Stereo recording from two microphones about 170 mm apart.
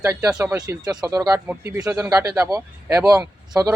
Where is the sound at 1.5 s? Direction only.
10° right (ahead or behind).